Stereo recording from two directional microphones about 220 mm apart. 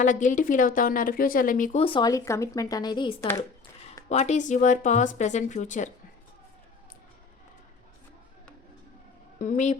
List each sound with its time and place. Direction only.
0.0 s a woman's voice: 35° left (ahead or behind)
1.8 s speech: 20° left (ahead or behind)
4.1 s a woman's voice: 30° left (ahead or behind)
9.4 s a woman's voice: 35° left (ahead or behind)